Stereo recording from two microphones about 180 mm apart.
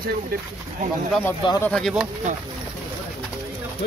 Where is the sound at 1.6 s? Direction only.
5° left (ahead or behind).